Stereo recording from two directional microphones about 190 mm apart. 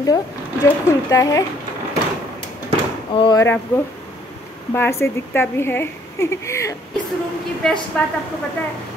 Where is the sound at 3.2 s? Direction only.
20° left (ahead or behind).